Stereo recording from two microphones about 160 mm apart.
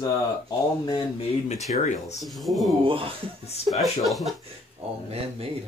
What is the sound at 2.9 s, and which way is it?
Speech, 35° right (ahead or behind).